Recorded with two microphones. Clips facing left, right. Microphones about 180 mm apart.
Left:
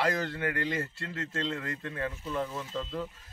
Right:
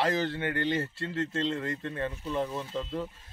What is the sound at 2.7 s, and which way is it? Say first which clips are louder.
Speech: right 2 dB; 10° right (ahead or behind).